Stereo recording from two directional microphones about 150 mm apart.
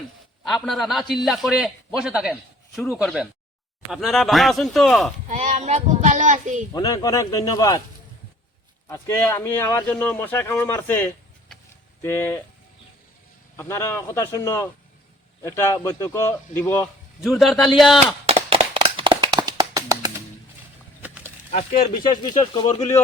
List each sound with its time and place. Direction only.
0.4 s a man's voice: centre (ahead or behind)
5.3 s speech: 50° right (ahead or behind)
6.7 s a man's voice: 25° left (ahead or behind)
8.9 s speech: 15° left (ahead or behind)
13.6 s a man's voice: 20° left (ahead or behind)
17.2 s a man's voice: centre (ahead or behind)
18.0 s a sound: 45° right (ahead or behind); by 21.3 s 10° right (ahead or behind)
21.5 s speech: 45° left (ahead or behind)
22.2 s a man's voice: 30° left (ahead or behind)
22.6 s speech: 45° left (ahead or behind)